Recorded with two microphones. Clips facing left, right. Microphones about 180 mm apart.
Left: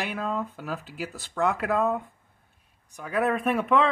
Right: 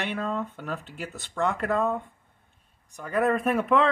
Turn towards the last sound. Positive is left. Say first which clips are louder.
# even
turn(degrees=0)  # may be behind; listen again after turning